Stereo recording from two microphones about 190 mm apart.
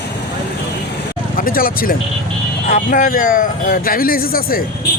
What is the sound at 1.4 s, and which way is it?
Speech, 50° left (ahead or behind).